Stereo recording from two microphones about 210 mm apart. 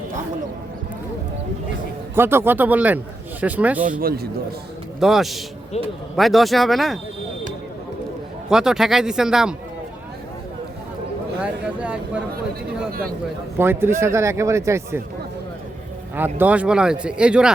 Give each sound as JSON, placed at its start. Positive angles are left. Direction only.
{"t": 2.1, "sound": "speech", "side_deg": -10}
{"t": 4.0, "sound": "speech", "side_deg": -50}
{"t": 4.9, "sound": "speech", "side_deg": 0}
{"t": 5.7, "sound": "speech", "side_deg": 30}
{"t": 6.1, "sound": "speech", "side_deg": 0}
{"t": 8.4, "sound": "speech", "side_deg": -5}
{"t": 11.3, "sound": "speech", "side_deg": -5}
{"t": 12.9, "sound": "speech", "side_deg": -45}
{"t": 13.6, "sound": "speech", "side_deg": -10}
{"t": 16.1, "sound": "speech", "side_deg": -10}